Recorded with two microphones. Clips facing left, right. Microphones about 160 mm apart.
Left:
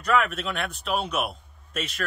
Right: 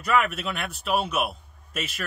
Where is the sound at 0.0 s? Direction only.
5° right (ahead or behind).